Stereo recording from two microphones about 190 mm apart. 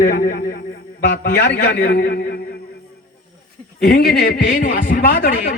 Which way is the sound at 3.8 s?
50° left (ahead or behind).